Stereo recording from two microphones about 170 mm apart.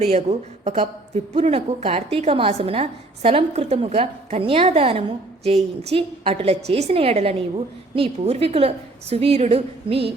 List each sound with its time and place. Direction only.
0.0 s speech: 40° right (ahead or behind)